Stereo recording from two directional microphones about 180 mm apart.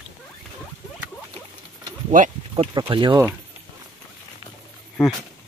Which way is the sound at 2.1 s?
45° right (ahead or behind).